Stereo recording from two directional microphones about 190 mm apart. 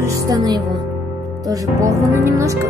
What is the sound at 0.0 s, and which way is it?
Speech, 20° right (ahead or behind).